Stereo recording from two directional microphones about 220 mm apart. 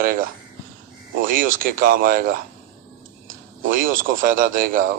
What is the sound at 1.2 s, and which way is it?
Speech, 40° right (ahead or behind).